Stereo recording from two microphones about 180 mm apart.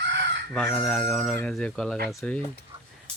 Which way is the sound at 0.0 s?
80° right.